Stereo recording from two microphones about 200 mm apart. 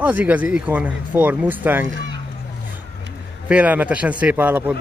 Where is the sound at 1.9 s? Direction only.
70° right (ahead or behind).